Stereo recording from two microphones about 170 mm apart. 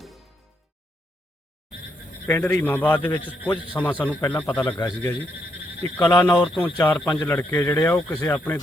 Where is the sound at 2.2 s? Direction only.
10° left (ahead or behind).